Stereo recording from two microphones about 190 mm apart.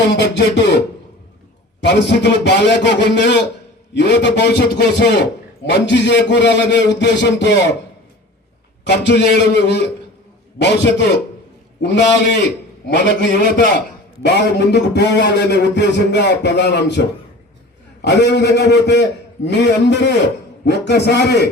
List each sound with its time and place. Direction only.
0.2 s a man's voice: 65° left (ahead or behind)
1.8 s a man's voice: 60° left (ahead or behind)
8.9 s a man's voice: 65° left (ahead or behind)